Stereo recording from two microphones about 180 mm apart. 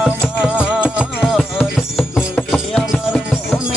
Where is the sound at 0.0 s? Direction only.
5° right (ahead or behind).